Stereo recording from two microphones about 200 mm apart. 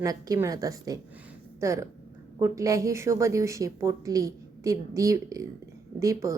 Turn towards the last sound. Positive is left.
turn(degrees=-15)  # may be behind; listen again after turning